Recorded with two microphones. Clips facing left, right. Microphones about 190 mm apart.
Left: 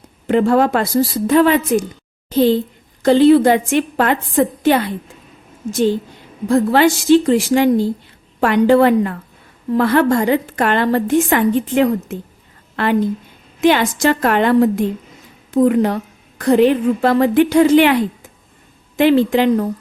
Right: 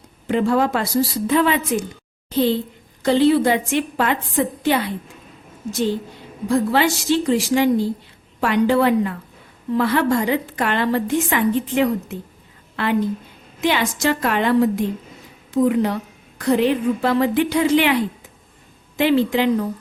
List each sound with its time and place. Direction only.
0.3 s a woman's voice: 60° left (ahead or behind)
3.0 s a woman's voice: 50° left (ahead or behind)
6.5 s a woman's voice: 50° left (ahead or behind)